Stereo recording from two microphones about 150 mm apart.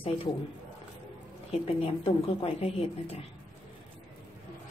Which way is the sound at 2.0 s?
40° left (ahead or behind).